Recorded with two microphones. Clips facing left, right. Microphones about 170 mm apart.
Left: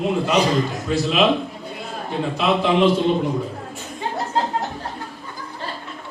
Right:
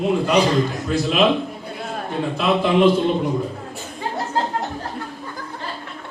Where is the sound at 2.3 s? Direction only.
Centre (ahead or behind).